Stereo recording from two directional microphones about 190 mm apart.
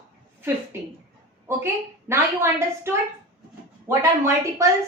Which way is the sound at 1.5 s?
15° right (ahead or behind).